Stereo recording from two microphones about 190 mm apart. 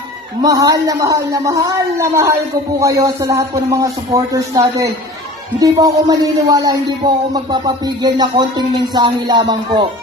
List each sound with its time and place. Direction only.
0.4 s speech: 20° right (ahead or behind)